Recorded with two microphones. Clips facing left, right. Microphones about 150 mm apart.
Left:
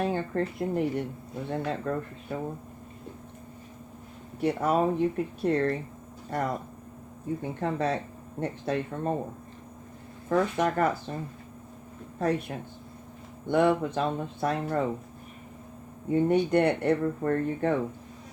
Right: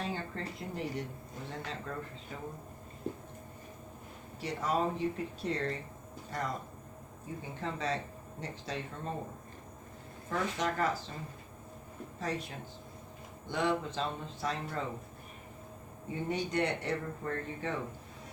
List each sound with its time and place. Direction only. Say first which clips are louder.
0.0 s speech: left 10 dB; 55° left (ahead or behind)
4.4 s speech: left 8 dB; 55° left (ahead or behind)
7.6 s speech: left 6 dB; 60° left (ahead or behind)
10.2 s speech: left 8 dB; 55° left (ahead or behind)
12.2 s speech: left 10 dB; 60° left (ahead or behind)
16.3 s speech: left 7 dB; 55° left (ahead or behind)